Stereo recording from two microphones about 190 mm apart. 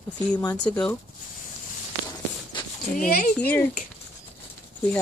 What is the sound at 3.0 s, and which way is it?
Speech, 45° left (ahead or behind).